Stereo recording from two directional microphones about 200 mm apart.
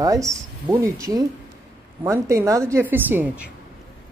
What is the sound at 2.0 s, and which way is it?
Speech, 15° right (ahead or behind).